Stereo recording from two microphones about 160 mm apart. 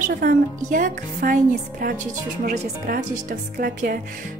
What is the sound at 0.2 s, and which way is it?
Speech, 55° right (ahead or behind).